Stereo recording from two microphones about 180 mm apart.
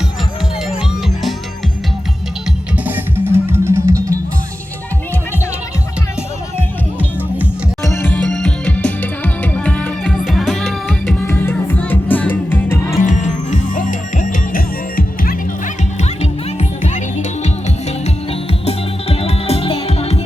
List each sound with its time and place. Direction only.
2.7 s music: 10° right (ahead or behind)
7.9 s music: 10° left (ahead or behind)
11.3 s music: 10° left (ahead or behind)
13.0 s music: 45° left (ahead or behind)
18.6 s music: 35° left (ahead or behind)